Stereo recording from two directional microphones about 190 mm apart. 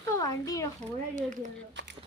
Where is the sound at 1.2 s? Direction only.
40° right (ahead or behind).